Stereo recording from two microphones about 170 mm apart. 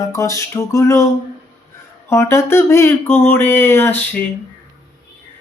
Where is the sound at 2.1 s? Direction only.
15° left (ahead or behind).